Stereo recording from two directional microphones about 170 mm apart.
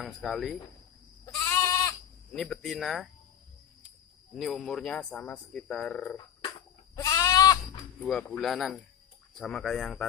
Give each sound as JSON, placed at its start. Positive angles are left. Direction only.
{"t": 0.0, "sound": "speech", "side_deg": 0}
{"t": 1.2, "sound": "goat", "side_deg": 20}
{"t": 2.3, "sound": "speech", "side_deg": 0}
{"t": 4.4, "sound": "speech", "side_deg": 0}
{"t": 7.0, "sound": "goat", "side_deg": 20}
{"t": 8.0, "sound": "speech", "side_deg": 5}